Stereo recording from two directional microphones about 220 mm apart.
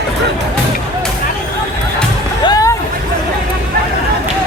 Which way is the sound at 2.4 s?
15° left (ahead or behind).